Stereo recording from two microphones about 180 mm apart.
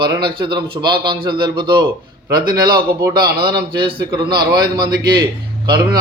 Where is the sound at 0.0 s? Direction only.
25° right (ahead or behind).